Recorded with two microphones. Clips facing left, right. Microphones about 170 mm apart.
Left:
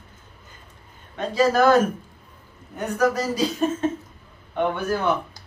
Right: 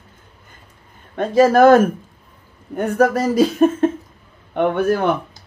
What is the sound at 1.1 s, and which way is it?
A man's voice, 50° right (ahead or behind).